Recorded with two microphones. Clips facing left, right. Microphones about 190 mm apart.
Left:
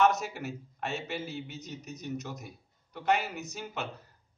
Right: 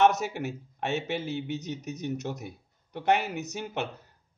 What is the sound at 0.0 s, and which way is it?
A man's voice, 65° right (ahead or behind).